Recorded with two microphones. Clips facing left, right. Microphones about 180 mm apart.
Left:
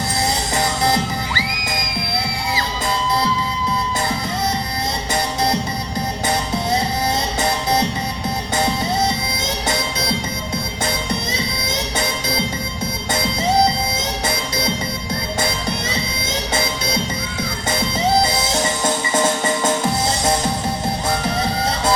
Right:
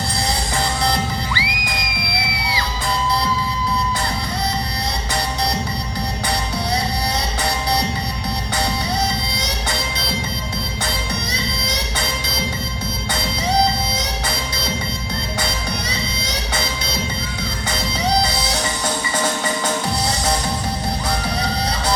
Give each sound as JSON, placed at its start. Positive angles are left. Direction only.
{"t": 1.3, "sound": "music", "side_deg": 45}
{"t": 19.6, "sound": "music", "side_deg": 25}